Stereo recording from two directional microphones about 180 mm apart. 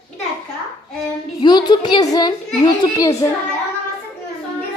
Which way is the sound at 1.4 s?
25° left (ahead or behind).